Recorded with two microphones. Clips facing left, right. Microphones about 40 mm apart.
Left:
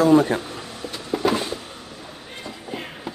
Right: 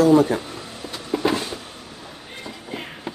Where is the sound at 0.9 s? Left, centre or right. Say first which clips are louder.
Even; centre.